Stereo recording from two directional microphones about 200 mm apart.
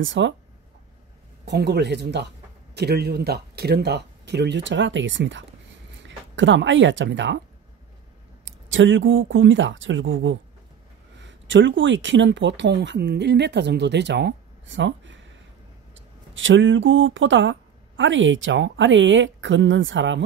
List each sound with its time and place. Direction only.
0.0 s speech: 70° right (ahead or behind)
1.4 s speech: 55° right (ahead or behind)
8.5 s speech: 70° right (ahead or behind)